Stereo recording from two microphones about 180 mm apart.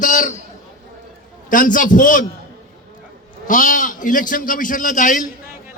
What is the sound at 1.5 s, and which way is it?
Speech, 45° left (ahead or behind).